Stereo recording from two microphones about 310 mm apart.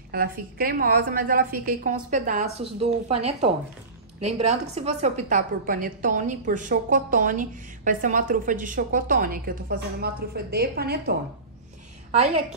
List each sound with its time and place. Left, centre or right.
0.1 s a woman's voice: right
12.1 s a woman's voice: centre